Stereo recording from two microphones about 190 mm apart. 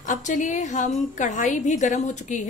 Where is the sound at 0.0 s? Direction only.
40° left (ahead or behind).